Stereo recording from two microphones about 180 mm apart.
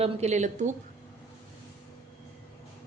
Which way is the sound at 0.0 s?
40° right (ahead or behind).